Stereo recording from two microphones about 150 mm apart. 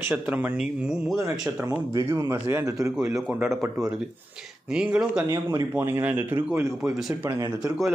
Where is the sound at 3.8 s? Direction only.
Centre (ahead or behind).